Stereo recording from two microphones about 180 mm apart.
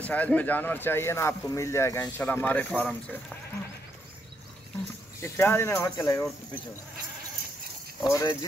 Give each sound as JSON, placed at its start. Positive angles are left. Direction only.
{"t": 0.0, "sound": "speech", "side_deg": 10}
{"t": 5.2, "sound": "speech", "side_deg": 10}
{"t": 8.0, "sound": "speech", "side_deg": 20}